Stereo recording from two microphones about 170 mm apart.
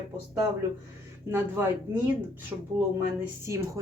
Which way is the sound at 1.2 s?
15° right (ahead or behind).